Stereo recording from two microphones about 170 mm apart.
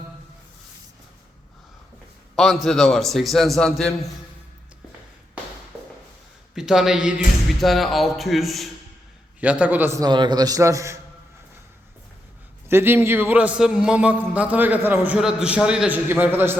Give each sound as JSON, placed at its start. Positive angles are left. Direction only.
{"t": 2.3, "sound": "a man's voice", "side_deg": 0}
{"t": 6.5, "sound": "a man's voice", "side_deg": -5}
{"t": 12.6, "sound": "a man's voice", "side_deg": -15}